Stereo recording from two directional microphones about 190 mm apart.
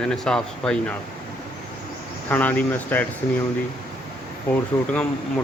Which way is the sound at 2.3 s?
10° left (ahead or behind).